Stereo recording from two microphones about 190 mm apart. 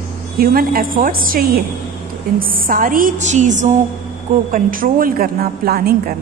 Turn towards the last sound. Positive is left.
turn(degrees=-55)  # may be behind; listen again after turning